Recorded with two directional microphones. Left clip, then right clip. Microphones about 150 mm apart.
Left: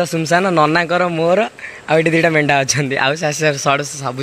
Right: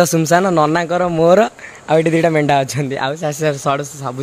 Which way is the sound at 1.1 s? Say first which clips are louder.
Right 8 dB; 35° right (ahead or behind).